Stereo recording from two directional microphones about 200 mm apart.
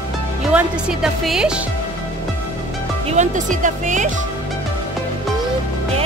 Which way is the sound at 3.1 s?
40° right (ahead or behind).